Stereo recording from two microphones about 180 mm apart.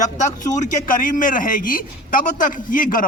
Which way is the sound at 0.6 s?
50° left (ahead or behind).